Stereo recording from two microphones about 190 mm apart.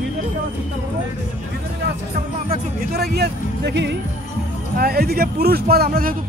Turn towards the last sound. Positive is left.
turn(degrees=-50)  # may be behind; listen again after turning